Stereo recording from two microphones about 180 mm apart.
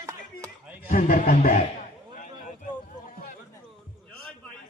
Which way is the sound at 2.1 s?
45° left (ahead or behind).